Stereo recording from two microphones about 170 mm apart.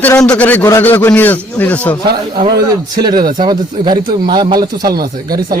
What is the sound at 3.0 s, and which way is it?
Speech, 25° right (ahead or behind).